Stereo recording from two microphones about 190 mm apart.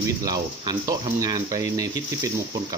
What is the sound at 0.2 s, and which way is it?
Speech, 20° right (ahead or behind).